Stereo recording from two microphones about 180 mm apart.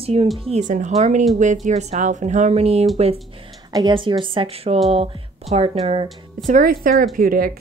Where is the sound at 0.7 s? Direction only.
40° right (ahead or behind).